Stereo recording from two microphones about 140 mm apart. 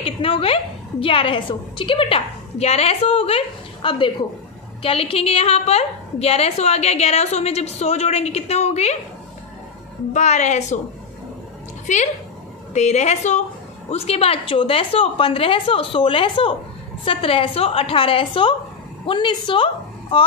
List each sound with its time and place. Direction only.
0.0 s a woman's voice: 40° left (ahead or behind)
10.1 s a woman's voice: 55° left (ahead or behind)
12.7 s a woman's voice: 55° left (ahead or behind)